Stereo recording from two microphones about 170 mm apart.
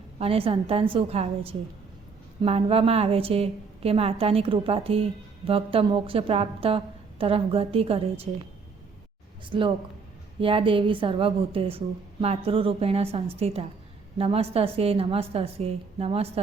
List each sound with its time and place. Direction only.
0.2 s a woman's voice: 35° right (ahead or behind)
9.5 s a woman's voice: 30° right (ahead or behind)